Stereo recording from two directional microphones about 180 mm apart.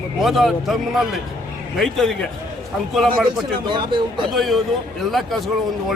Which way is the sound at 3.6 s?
25° right (ahead or behind).